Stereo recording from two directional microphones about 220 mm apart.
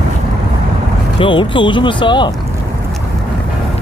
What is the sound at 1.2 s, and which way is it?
Speech, 20° left (ahead or behind).